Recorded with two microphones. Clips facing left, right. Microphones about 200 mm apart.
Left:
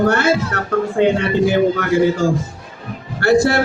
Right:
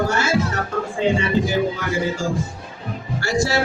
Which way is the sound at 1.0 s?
65° left (ahead or behind).